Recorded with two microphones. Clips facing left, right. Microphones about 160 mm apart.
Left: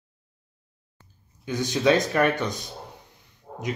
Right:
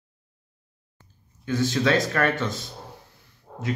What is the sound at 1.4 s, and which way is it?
Speech, 15° left (ahead or behind).